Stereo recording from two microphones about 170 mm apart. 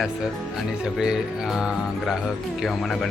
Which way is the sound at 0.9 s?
5° right (ahead or behind).